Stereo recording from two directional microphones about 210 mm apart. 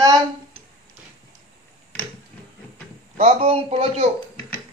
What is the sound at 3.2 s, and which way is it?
Speech, 30° right (ahead or behind).